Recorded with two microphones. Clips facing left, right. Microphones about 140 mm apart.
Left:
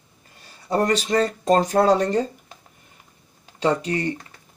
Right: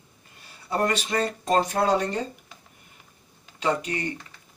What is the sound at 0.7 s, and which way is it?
Speech, 40° left (ahead or behind).